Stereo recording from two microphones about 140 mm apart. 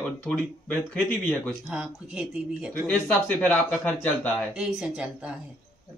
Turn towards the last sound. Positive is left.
turn(degrees=-5)  # may be behind; listen again after turning